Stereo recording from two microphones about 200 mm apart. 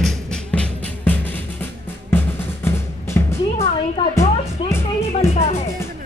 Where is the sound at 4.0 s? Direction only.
25° left (ahead or behind).